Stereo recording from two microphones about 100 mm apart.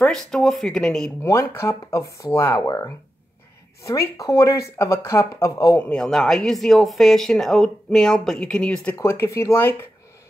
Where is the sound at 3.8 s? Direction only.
30° left (ahead or behind).